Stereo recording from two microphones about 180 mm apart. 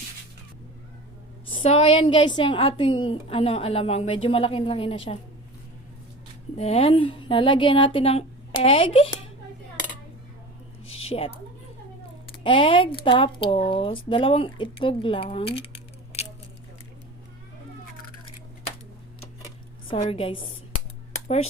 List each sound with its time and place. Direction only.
1.5 s a woman's voice: 35° left (ahead or behind)
6.6 s a woman's voice: 35° left (ahead or behind)
11.1 s a woman's voice: 30° left (ahead or behind)
12.4 s speech: 30° left (ahead or behind)
20.0 s a woman's voice: 30° left (ahead or behind)